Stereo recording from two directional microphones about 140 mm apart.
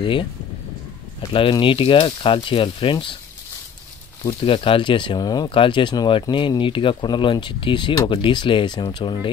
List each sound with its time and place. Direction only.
0.0 s speech: 35° left (ahead or behind)
4.3 s speech: 40° left (ahead or behind)